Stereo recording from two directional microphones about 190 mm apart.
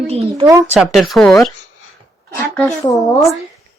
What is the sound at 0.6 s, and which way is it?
Speech, centre (ahead or behind).